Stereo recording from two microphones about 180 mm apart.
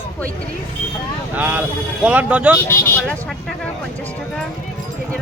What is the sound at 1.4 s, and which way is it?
A man's voice, 10° right (ahead or behind).